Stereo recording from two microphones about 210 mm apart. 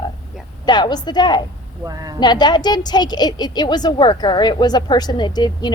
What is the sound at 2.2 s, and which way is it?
A woman's voice, 20° left (ahead or behind).